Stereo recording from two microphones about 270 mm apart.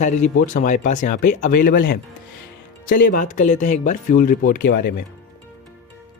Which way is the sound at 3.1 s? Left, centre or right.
Left.